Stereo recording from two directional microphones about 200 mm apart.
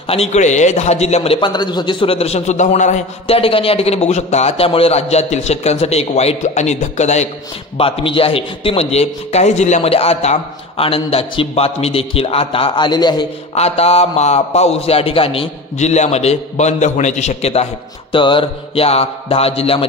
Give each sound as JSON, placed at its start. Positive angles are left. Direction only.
{"t": 0.0, "sound": "a man's voice", "side_deg": 30}